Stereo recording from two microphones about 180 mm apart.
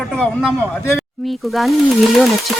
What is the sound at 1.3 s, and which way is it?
Speech, centre (ahead or behind).